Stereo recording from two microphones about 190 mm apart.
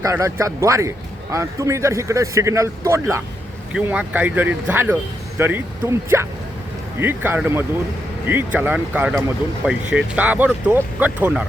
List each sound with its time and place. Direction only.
0.0 s speech: 15° right (ahead or behind)